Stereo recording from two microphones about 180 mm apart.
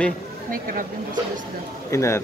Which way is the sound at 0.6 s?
50° right (ahead or behind).